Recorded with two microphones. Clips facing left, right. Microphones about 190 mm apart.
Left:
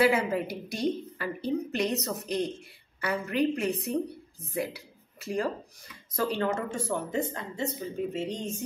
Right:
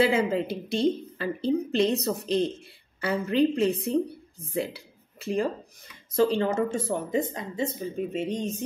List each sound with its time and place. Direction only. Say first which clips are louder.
0.0 s speech: right 2 dB; 25° right (ahead or behind)